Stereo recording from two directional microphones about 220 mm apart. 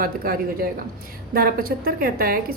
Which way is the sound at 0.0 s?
40° right (ahead or behind).